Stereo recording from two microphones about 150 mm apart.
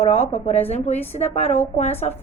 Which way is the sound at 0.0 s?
40° left (ahead or behind).